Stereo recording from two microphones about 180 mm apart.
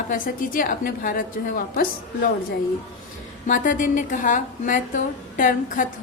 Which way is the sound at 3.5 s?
45° left (ahead or behind).